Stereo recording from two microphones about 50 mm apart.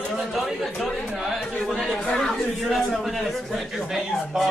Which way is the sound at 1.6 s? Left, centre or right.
Centre.